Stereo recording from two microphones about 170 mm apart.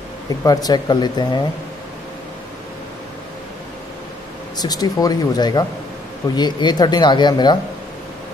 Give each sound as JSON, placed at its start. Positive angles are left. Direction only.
{"t": 0.4, "sound": "speech", "side_deg": 20}
{"t": 4.6, "sound": "speech", "side_deg": 25}